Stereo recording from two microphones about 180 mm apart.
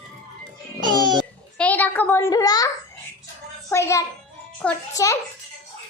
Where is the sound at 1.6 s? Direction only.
10° left (ahead or behind).